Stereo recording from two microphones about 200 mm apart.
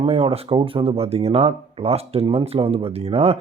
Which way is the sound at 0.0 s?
30° right (ahead or behind).